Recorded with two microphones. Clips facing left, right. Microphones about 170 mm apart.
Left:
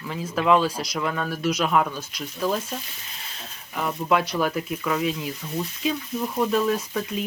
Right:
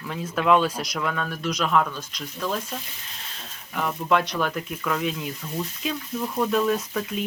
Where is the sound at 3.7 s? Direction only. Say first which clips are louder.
Even; 5° left (ahead or behind).